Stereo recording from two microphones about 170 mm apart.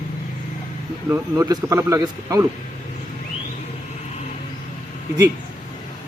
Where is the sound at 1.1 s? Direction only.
15° right (ahead or behind).